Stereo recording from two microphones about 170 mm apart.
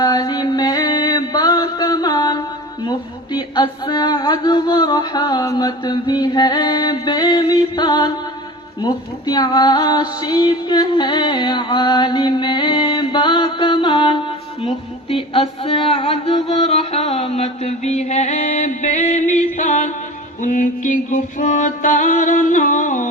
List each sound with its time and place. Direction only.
0.0 s music: 25° left (ahead or behind)
9.2 s music: 25° left (ahead or behind); by 23.0 s 45° left (ahead or behind)